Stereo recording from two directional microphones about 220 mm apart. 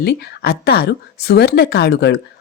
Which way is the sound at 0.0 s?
45° left (ahead or behind).